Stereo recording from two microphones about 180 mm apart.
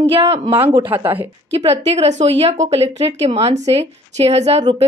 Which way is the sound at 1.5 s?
35° right (ahead or behind).